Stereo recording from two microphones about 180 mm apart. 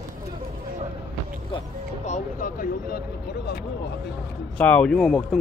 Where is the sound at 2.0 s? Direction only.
45° left (ahead or behind).